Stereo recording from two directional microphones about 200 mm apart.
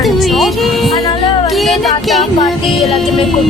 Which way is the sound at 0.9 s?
25° left (ahead or behind).